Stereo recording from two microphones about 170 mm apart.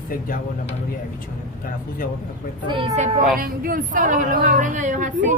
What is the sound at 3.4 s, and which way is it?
A woman's voice, 55° right (ahead or behind).